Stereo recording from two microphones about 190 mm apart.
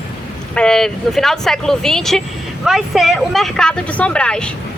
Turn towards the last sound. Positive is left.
turn(degrees=5)  # may be behind; listen again after turning